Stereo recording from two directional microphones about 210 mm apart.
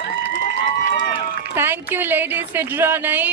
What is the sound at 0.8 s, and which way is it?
Run, 50° left (ahead or behind).